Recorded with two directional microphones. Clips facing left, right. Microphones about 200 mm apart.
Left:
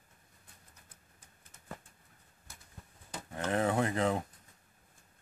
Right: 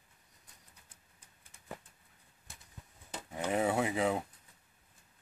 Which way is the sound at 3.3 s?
10° right (ahead or behind).